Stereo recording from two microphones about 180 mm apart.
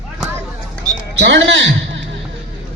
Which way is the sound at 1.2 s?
90° right.